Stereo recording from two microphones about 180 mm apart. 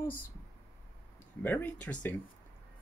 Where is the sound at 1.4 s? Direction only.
10° left (ahead or behind).